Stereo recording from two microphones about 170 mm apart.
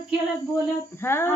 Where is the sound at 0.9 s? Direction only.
15° left (ahead or behind).